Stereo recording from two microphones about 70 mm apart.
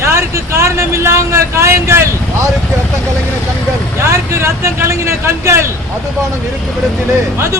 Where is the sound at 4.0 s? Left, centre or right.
Right.